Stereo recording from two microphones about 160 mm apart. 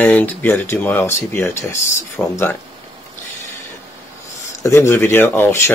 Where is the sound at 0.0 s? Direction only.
10° left (ahead or behind).